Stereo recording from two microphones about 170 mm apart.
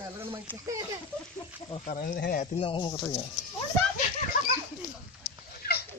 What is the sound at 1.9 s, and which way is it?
Speech, 50° left (ahead or behind).